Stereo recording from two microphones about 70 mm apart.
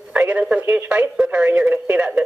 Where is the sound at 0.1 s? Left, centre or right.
Right.